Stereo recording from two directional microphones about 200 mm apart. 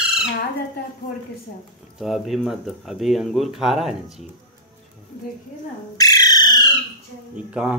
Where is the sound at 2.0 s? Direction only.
Centre (ahead or behind).